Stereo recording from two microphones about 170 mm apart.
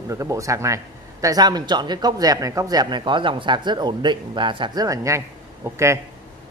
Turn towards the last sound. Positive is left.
turn(degrees=-15)  # may be behind; listen again after turning